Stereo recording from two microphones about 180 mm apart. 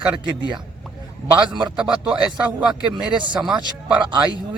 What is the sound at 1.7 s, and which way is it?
A man's voice, 5° right (ahead or behind).